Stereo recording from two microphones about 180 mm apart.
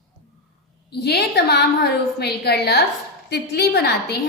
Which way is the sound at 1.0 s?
65° left (ahead or behind).